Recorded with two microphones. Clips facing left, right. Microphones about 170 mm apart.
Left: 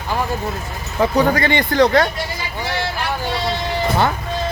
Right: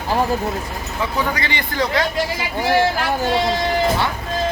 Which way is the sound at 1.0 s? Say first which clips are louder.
Left 7 dB; 45° left (ahead or behind).